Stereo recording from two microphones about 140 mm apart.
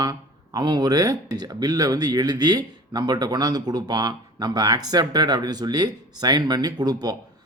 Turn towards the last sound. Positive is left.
turn(degrees=-30)  # may be behind; listen again after turning